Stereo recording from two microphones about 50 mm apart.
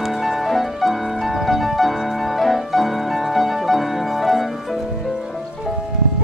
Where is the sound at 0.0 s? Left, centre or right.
Centre.